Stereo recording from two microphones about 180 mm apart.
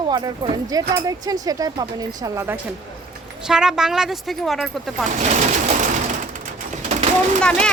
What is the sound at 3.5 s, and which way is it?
Speech, 5° right (ahead or behind).